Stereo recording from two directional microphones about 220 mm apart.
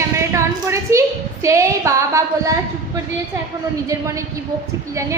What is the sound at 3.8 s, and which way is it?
Speech, 15° right (ahead or behind).